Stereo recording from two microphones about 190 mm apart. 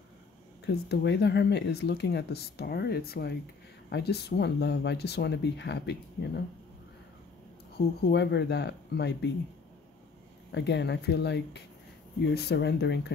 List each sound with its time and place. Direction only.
0.8 s speech: 60° left (ahead or behind)
8.0 s speech: 65° left (ahead or behind)
10.5 s speech: 65° left (ahead or behind)